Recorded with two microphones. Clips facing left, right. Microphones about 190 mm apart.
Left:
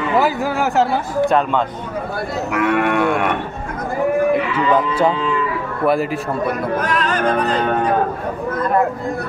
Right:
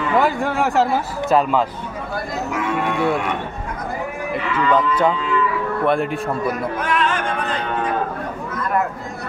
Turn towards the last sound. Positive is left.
turn(degrees=40)  # may be behind; listen again after turning